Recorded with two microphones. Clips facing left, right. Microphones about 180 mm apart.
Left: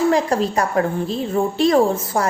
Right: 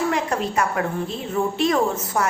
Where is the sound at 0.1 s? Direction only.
35° left (ahead or behind).